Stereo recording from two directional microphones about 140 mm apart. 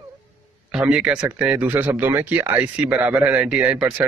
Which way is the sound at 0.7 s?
5° right (ahead or behind).